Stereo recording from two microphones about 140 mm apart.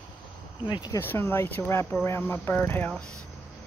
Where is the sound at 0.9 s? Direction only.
20° left (ahead or behind).